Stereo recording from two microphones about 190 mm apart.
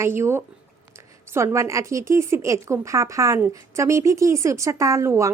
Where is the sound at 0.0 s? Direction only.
15° right (ahead or behind).